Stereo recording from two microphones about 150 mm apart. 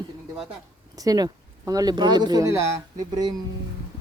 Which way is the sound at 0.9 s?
25° right (ahead or behind).